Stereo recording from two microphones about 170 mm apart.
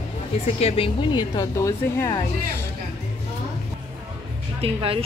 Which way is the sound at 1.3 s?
20° left (ahead or behind).